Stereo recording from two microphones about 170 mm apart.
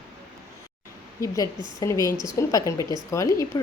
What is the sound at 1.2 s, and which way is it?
A woman's voice, 20° left (ahead or behind).